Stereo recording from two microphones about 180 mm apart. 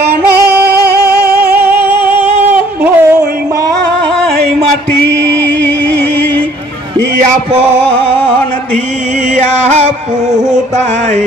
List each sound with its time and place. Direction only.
0.1 s singing: 65° right (ahead or behind)
1.6 s singing: 10° right (ahead or behind)
2.8 s a sound: 10° right (ahead or behind)
9.3 s music: 40° right (ahead or behind)